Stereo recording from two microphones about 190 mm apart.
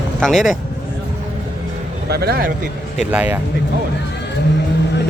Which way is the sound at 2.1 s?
55° right (ahead or behind).